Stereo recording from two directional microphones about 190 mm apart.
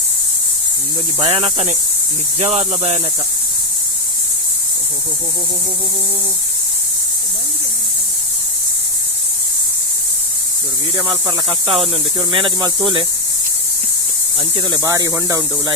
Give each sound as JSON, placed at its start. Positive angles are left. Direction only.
{"t": 1.2, "sound": "speech", "side_deg": -30}
{"t": 11.3, "sound": "speech", "side_deg": -30}
{"t": 14.3, "sound": "speech", "side_deg": -30}
{"t": 14.8, "sound": "speech", "side_deg": -15}